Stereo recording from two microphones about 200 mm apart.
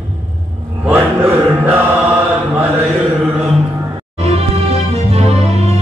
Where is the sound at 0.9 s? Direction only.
10° right (ahead or behind).